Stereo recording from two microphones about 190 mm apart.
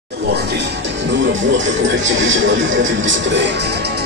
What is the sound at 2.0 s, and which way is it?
Speech, 90° right.